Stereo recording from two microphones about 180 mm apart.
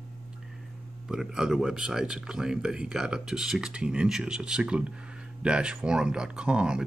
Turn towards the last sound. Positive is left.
turn(degrees=-5)  # may be behind; listen again after turning